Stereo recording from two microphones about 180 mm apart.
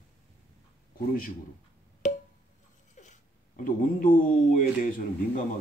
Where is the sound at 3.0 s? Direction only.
40° left (ahead or behind).